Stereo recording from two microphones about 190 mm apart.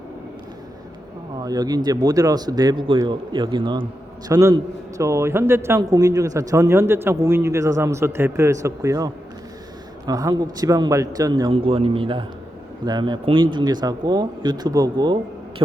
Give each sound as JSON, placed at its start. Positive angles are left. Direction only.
{"t": 1.4, "sound": "a man's voice", "side_deg": -20}
{"t": 11.5, "sound": "speech", "side_deg": -30}